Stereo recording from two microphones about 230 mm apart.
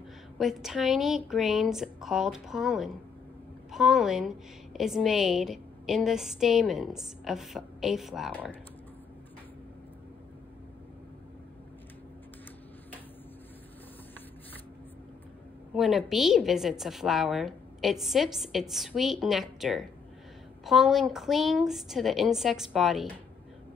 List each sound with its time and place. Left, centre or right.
0.4 s a woman's voice: centre
15.7 s a woman's voice: centre